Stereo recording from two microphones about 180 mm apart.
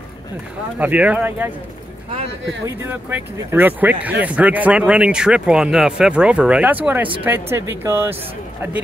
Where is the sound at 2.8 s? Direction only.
10° right (ahead or behind).